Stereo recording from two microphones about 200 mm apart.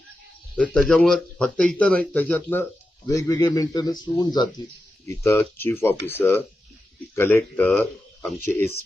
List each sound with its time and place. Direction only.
0.5 s a man's voice: 5° left (ahead or behind)